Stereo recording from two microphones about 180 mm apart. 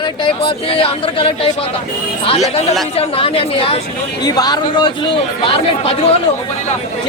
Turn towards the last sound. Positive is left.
turn(degrees=35)  # may be behind; listen again after turning